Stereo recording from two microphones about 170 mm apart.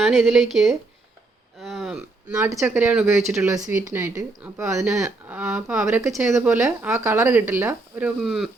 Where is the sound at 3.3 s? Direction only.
15° right (ahead or behind).